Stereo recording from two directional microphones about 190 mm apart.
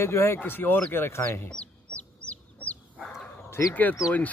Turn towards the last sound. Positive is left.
turn(degrees=15)  # may be behind; listen again after turning